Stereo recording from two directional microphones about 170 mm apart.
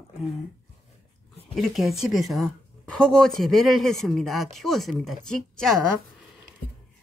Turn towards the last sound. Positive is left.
turn(degrees=5)  # may be behind; listen again after turning